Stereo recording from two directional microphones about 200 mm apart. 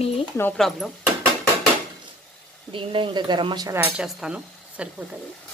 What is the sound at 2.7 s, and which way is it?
Speech, 25° right (ahead or behind).